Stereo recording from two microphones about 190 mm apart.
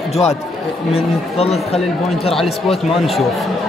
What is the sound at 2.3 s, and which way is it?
Speech, centre (ahead or behind).